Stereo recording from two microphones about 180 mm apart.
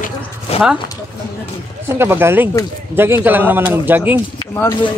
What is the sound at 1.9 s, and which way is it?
Speech, 15° right (ahead or behind).